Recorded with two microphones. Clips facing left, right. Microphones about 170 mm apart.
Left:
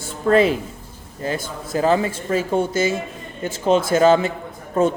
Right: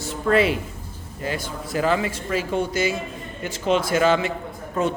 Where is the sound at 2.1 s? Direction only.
50° left (ahead or behind).